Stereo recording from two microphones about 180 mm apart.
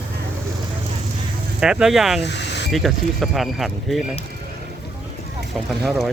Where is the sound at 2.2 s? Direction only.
70° left (ahead or behind).